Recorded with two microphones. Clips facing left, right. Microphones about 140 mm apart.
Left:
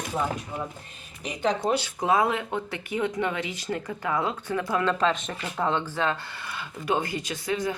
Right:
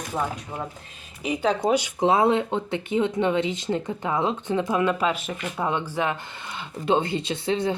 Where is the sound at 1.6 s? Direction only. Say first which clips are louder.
Right 4 dB; 20° right (ahead or behind).